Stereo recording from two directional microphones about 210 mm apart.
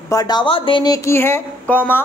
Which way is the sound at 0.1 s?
20° left (ahead or behind).